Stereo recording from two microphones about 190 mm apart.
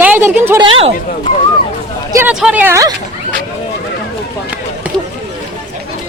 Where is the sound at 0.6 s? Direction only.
30° right (ahead or behind).